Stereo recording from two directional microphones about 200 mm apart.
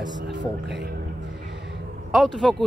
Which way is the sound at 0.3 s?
60° right (ahead or behind).